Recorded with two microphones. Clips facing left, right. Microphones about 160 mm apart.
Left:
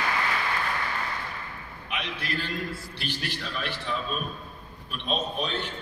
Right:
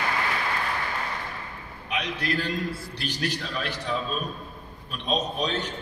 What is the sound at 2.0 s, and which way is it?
A man's voice, 40° right (ahead or behind).